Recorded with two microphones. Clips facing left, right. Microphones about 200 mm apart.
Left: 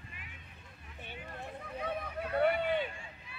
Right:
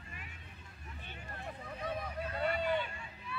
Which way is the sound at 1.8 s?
60° left (ahead or behind).